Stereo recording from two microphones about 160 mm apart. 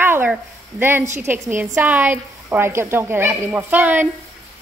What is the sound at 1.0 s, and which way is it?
Speech, 45° right (ahead or behind).